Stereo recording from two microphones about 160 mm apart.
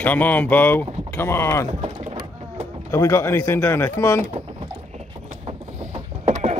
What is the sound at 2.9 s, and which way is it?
Speech, 15° left (ahead or behind).